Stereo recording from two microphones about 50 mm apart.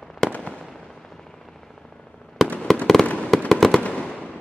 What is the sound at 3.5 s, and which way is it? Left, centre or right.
Fireworks, centre.